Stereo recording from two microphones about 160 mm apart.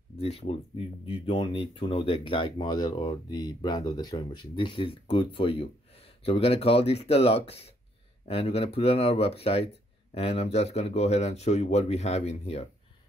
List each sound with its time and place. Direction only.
0.2 s speech: 40° left (ahead or behind)